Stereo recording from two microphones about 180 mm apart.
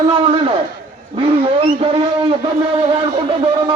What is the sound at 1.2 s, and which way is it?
Speech, 30° right (ahead or behind).